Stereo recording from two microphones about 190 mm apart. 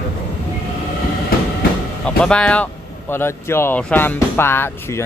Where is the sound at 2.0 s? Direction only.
5° left (ahead or behind).